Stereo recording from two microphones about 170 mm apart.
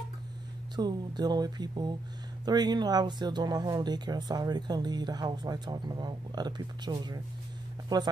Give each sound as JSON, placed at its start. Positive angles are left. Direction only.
{"t": 0.7, "sound": "speech", "side_deg": -25}